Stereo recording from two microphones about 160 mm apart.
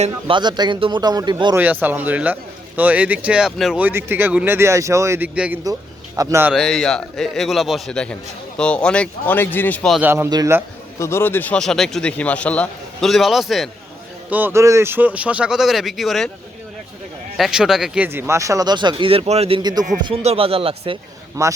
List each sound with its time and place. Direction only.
0.3 s speech: 30° right (ahead or behind)
1.5 s a man's voice: 10° right (ahead or behind)
6.5 s speech: centre (ahead or behind)
10.0 s a man's voice: 15° right (ahead or behind)
11.0 s speech: 15° left (ahead or behind); by 13.7 s centre (ahead or behind)
14.3 s a man's voice: 10° right (ahead or behind)
17.3 s speech: centre (ahead or behind); by 21.0 s 35° right (ahead or behind)
21.4 s speech: 20° right (ahead or behind)